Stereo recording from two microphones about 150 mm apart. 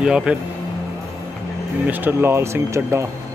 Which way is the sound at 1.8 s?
15° right (ahead or behind).